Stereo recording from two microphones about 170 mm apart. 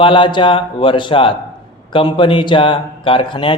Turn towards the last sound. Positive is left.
turn(degrees=30)  # may be behind; listen again after turning